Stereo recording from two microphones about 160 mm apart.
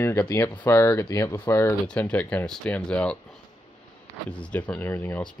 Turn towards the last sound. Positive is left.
turn(degrees=10)  # may be behind; listen again after turning